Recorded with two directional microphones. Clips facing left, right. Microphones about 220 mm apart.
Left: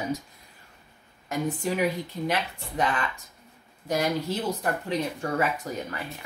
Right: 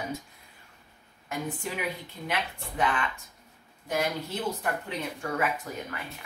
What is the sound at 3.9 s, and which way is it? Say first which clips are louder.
Speech: left 4 dB; 40° left (ahead or behind).